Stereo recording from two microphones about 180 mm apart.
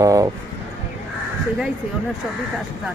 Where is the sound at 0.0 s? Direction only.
20° right (ahead or behind).